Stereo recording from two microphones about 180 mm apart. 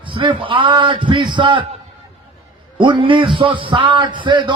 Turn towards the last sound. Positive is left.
turn(degrees=-25)  # may be behind; listen again after turning